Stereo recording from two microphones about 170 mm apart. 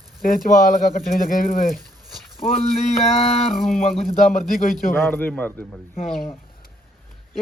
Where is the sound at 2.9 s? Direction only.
35° left (ahead or behind).